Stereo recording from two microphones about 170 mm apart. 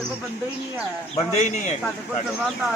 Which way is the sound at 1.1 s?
40° left (ahead or behind).